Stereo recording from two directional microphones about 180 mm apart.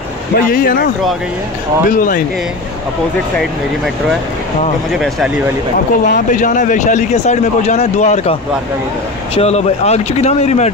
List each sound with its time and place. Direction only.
0.5 s speech: 55° left (ahead or behind)
4.9 s speech: centre (ahead or behind)
6.0 s speech: 45° left (ahead or behind)